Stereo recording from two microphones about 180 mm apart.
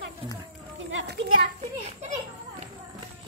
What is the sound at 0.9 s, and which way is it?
Children playing, 70° right (ahead or behind).